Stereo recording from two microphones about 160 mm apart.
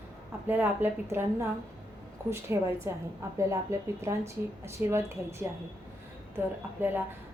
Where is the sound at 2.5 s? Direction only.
15° right (ahead or behind).